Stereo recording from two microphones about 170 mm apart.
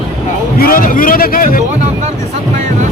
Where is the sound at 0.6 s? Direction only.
55° left (ahead or behind).